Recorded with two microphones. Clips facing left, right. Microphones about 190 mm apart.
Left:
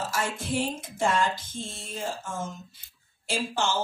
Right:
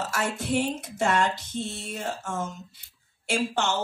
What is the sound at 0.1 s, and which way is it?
A man's voice, 70° right (ahead or behind).